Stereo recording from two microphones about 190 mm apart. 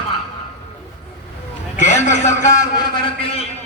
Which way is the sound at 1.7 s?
40° left (ahead or behind).